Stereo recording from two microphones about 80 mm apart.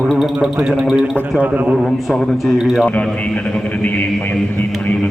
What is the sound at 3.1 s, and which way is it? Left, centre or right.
A man's voice, centre.